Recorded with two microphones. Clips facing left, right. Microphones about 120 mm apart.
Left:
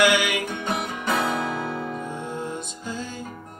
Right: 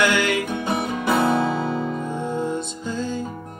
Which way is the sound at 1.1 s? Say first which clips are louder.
Right 5 dB; 30° right (ahead or behind).